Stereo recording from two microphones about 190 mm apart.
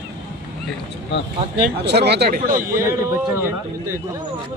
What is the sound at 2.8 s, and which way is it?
Speech, 15° right (ahead or behind).